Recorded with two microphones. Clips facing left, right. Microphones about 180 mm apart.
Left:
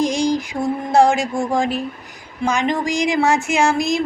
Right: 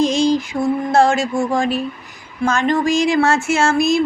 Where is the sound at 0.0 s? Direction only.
15° left (ahead or behind).